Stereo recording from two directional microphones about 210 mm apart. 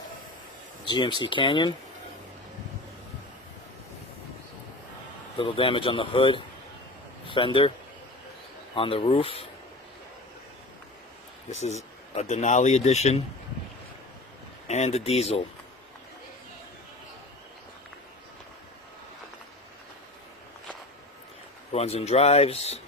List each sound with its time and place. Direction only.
0.9 s speech: 20° left (ahead or behind)
5.4 s a man's voice: 25° left (ahead or behind)
8.7 s speech: 25° left (ahead or behind)
11.5 s speech: 30° left (ahead or behind)
14.7 s speech: 30° left (ahead or behind)
21.7 s speech: 30° left (ahead or behind)